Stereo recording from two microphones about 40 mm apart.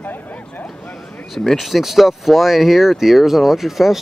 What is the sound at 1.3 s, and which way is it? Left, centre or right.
Speech, centre.